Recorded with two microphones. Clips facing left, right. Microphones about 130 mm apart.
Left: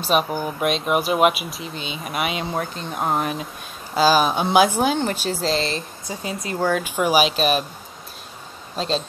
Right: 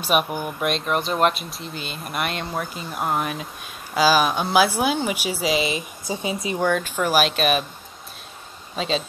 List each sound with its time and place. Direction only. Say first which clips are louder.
0.0 s speech: left 1 dB; 5° right (ahead or behind)
6.0 s speech: right 5 dB; 25° right (ahead or behind)
6.6 s speech: left 2 dB; 10° left (ahead or behind)
8.7 s speech: left 1 dB; centre (ahead or behind)